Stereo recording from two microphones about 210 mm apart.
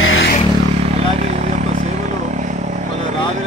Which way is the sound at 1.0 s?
30° right (ahead or behind).